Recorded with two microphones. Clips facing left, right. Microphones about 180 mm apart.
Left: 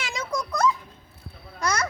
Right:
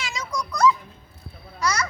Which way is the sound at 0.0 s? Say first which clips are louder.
Left 1 dB; 55° left (ahead or behind).